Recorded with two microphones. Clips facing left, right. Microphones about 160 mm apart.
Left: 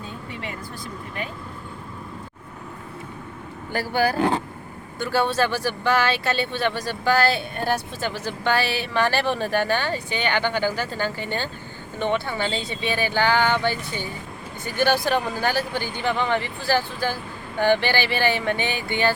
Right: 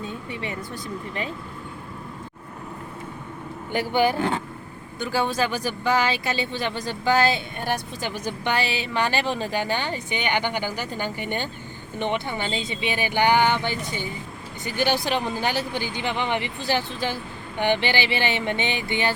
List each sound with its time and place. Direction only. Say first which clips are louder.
3.7 s speech: right 1 dB; 20° right (ahead or behind)